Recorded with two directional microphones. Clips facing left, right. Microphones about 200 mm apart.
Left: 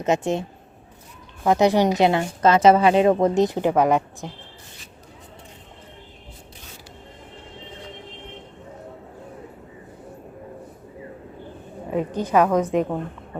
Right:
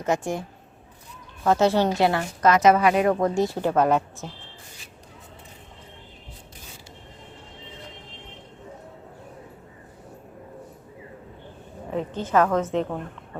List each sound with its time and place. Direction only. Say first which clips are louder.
0.0 s a woman's voice: left 4 dB; 20° left (ahead or behind)
1.5 s a woman's voice: left 2 dB; 15° left (ahead or behind)
11.9 s a woman's voice: left 4 dB; 15° left (ahead or behind)